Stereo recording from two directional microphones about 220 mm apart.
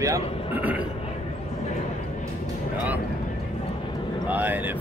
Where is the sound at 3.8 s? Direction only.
20° left (ahead or behind).